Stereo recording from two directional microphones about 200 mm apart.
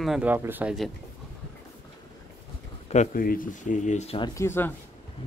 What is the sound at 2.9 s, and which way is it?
Speech, 40° left (ahead or behind).